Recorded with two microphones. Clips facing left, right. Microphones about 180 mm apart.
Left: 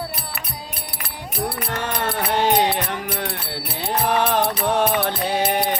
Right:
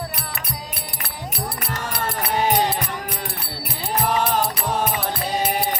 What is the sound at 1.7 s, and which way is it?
Music, 70° left (ahead or behind).